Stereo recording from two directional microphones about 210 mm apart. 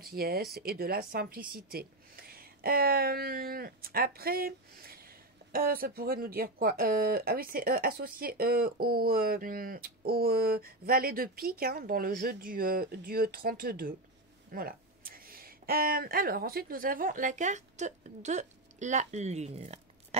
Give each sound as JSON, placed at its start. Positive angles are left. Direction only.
{"t": 0.0, "sound": "speech", "side_deg": -45}